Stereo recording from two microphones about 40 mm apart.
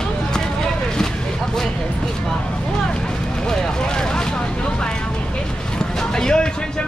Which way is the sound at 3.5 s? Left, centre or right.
Centre.